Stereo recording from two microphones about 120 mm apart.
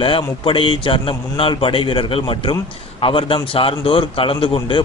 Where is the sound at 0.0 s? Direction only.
50° left (ahead or behind).